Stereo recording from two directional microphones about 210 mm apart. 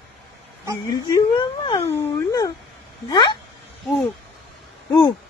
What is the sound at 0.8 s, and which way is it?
Speech, 15° left (ahead or behind).